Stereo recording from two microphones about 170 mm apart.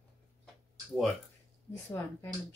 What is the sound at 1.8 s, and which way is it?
Speech, 10° left (ahead or behind).